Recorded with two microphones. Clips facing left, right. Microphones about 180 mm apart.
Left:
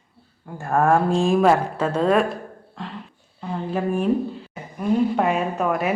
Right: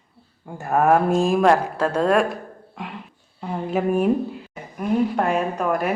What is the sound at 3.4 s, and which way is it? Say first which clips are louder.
Speech: right 2 dB; 15° right (ahead or behind).